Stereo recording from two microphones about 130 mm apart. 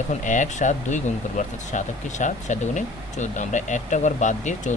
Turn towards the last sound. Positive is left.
turn(degrees=65)  # may be behind; listen again after turning